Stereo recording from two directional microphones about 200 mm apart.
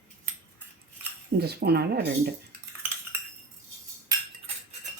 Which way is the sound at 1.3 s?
55° right (ahead or behind).